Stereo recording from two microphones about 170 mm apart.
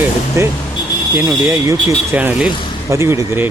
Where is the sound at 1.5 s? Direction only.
15° right (ahead or behind).